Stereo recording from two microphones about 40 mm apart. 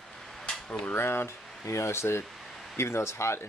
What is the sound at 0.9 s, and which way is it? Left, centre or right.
Speech, left.